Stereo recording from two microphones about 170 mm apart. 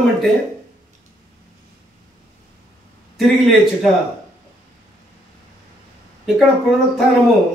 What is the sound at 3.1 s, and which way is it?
Speech, centre (ahead or behind).